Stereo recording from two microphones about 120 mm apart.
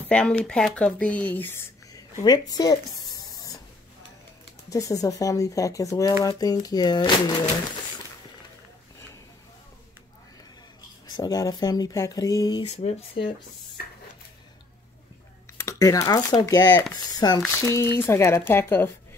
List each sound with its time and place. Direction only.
0.1 s speech: 10° left (ahead or behind)
2.2 s a sound: 35° left (ahead or behind)
4.6 s speech: 30° left (ahead or behind)
11.1 s speech: 30° left (ahead or behind)
12.6 s speech: 55° left (ahead or behind)
15.5 s speech: 25° left (ahead or behind)